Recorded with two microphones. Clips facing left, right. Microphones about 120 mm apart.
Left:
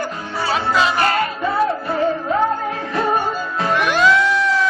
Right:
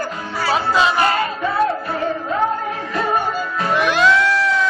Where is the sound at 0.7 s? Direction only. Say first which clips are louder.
Even; 15° right (ahead or behind).